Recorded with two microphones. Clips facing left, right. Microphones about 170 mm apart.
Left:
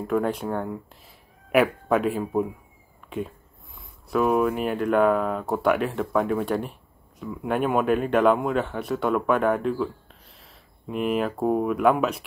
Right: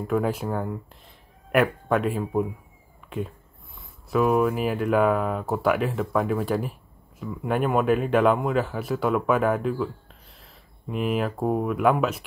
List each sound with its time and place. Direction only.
0.0 s speech: centre (ahead or behind)